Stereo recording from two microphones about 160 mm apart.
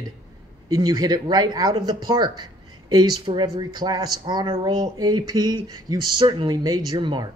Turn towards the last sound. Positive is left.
turn(degrees=-30)  # may be behind; listen again after turning